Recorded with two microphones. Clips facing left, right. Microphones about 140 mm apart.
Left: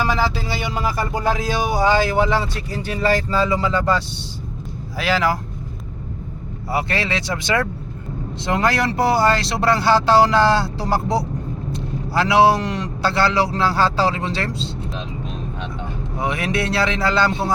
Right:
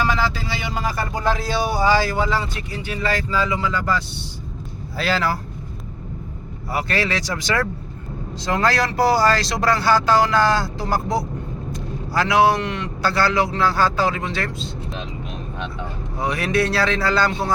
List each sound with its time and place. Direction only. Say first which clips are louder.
1.2 s speech: even; 10° left (ahead or behind)
2.6 s speech: left 4 dB; 40° left (ahead or behind)
4.9 s speech: left 2 dB; 15° left (ahead or behind)
6.7 s speech: left 1 dB; 25° left (ahead or behind)
16.1 s speech: right 1 dB; 20° left (ahead or behind)